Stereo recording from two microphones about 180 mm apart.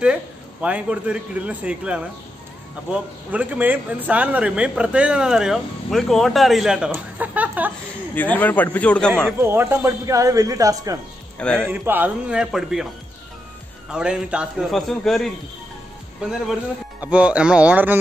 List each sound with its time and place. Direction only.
0.0 s a man's voice: 5° right (ahead or behind)
8.1 s a man's voice: 10° left (ahead or behind)
9.4 s a man's voice: 15° right (ahead or behind)
11.3 s speech: 5° left (ahead or behind)
11.7 s a man's voice: 10° right (ahead or behind)
13.9 s a man's voice: 5° right (ahead or behind)